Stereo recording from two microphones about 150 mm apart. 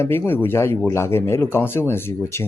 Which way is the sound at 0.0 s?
15° left (ahead or behind).